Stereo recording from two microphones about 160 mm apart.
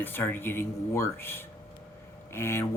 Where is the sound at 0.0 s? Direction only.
15° left (ahead or behind).